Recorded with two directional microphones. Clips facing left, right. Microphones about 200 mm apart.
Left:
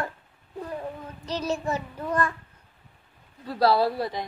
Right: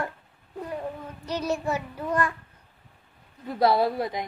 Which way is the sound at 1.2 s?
10° right (ahead or behind).